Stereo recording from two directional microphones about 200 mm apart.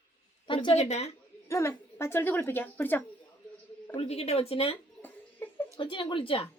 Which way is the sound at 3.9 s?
30° left (ahead or behind).